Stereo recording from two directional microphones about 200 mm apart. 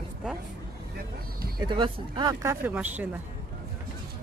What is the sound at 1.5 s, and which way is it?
Speech, 25° right (ahead or behind).